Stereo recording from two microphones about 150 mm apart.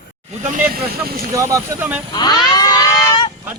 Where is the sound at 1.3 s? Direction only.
20° right (ahead or behind).